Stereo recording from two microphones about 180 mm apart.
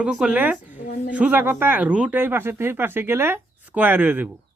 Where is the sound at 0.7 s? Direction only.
45° left (ahead or behind).